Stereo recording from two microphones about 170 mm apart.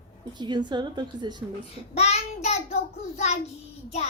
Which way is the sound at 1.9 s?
40° left (ahead or behind).